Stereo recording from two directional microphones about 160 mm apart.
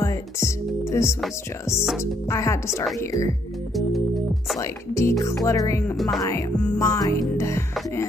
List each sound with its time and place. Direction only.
0.0 s music: 20° left (ahead or behind)
2.2 s music: 20° left (ahead or behind)
4.6 s music: 20° left (ahead or behind)
5.9 s music: centre (ahead or behind)
6.7 s music: 20° left (ahead or behind)